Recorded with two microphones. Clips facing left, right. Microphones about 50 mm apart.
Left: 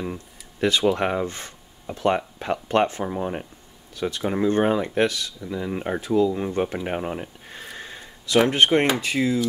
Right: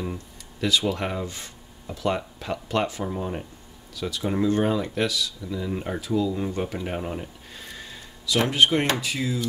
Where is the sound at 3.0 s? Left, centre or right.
Left.